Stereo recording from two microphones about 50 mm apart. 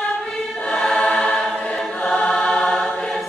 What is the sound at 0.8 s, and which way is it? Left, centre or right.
Choir, centre.